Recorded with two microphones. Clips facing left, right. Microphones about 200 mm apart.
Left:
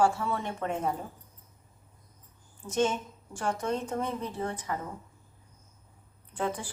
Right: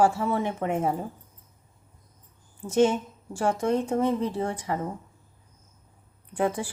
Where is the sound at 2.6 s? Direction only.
30° right (ahead or behind).